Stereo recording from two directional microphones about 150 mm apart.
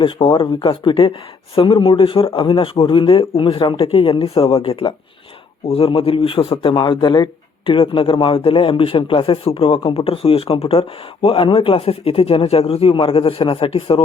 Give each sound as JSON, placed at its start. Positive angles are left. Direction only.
{"t": 0.0, "sound": "a man's voice", "side_deg": 35}